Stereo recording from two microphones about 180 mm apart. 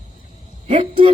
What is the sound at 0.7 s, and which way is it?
Speech, 30° right (ahead or behind).